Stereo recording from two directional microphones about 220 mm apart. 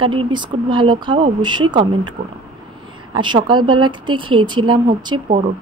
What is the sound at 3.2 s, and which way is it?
Speech, 20° right (ahead or behind).